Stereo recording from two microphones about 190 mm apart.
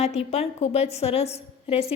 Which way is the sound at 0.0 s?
35° left (ahead or behind).